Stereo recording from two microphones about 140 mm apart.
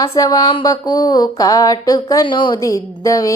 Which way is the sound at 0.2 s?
25° left (ahead or behind).